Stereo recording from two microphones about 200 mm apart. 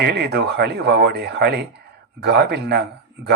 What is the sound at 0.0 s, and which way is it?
A man's voice, 55° right (ahead or behind).